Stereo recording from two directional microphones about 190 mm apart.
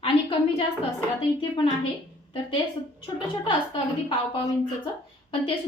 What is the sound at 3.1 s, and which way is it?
A woman's voice, 25° left (ahead or behind).